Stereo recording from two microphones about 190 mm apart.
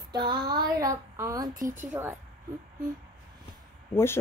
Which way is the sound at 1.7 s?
15° right (ahead or behind).